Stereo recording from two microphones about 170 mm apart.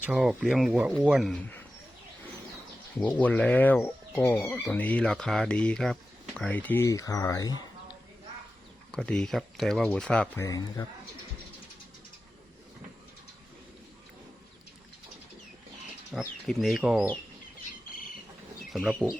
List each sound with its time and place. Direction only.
0.0 s speech: 5° right (ahead or behind)
3.2 s speech: 10° left (ahead or behind)
8.9 s speech: 5° left (ahead or behind)
10.4 s speech: 20° left (ahead or behind)
16.1 s speech: centre (ahead or behind)
18.6 s speech: centre (ahead or behind)